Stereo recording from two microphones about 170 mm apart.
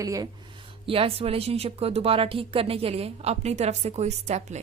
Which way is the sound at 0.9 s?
35° right (ahead or behind).